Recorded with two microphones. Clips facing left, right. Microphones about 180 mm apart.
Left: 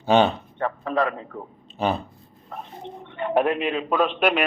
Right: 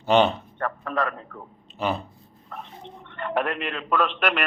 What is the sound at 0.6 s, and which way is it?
Speech, 30° left (ahead or behind).